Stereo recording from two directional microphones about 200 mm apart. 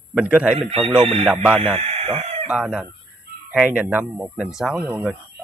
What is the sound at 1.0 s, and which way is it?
Music, 25° right (ahead or behind).